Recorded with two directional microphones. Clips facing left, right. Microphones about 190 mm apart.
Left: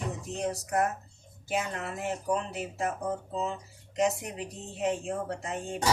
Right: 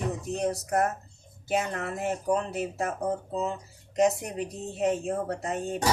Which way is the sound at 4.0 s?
40° right (ahead or behind).